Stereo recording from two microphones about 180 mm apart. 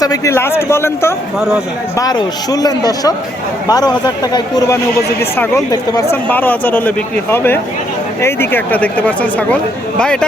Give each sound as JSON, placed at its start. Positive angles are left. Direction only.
{"t": 0.0, "sound": "speech", "side_deg": 20}
{"t": 1.4, "sound": "speech", "side_deg": 0}
{"t": 2.0, "sound": "speech", "side_deg": 20}